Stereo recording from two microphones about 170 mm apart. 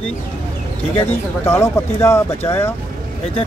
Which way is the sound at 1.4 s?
15° left (ahead or behind).